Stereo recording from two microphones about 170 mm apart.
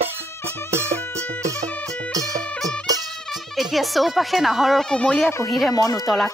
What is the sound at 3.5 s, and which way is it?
Speech, centre (ahead or behind).